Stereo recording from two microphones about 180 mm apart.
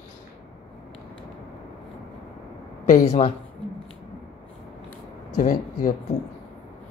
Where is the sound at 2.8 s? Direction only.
40° left (ahead or behind).